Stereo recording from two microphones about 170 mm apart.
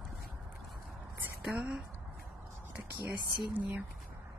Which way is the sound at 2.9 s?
10° right (ahead or behind).